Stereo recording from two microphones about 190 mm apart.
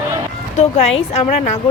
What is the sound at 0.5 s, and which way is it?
A woman's voice, 35° left (ahead or behind).